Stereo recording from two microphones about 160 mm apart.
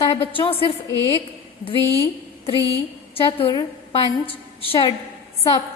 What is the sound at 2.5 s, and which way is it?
Speech, 20° right (ahead or behind).